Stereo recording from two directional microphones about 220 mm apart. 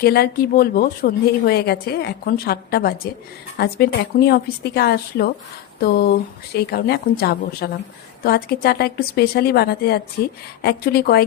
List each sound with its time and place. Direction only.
0.0 s speech: 45° left (ahead or behind)